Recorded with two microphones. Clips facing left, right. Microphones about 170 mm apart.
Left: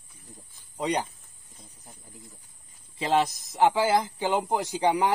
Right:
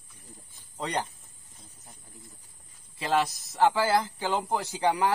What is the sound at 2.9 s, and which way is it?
Speech, 20° left (ahead or behind).